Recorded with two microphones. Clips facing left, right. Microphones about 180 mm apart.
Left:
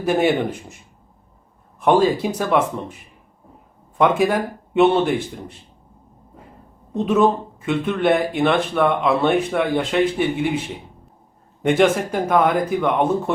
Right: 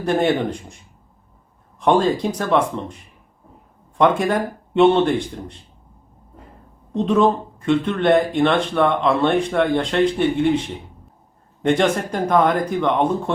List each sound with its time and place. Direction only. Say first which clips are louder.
0.0 s speech: even; 10° left (ahead or behind)
1.8 s speech: left 1 dB; 5° left (ahead or behind)
6.9 s speech: even; 5° left (ahead or behind)
11.6 s speech: left 1 dB; 5° left (ahead or behind)